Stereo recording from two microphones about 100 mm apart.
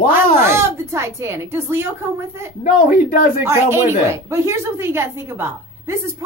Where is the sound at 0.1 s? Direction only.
25° right (ahead or behind).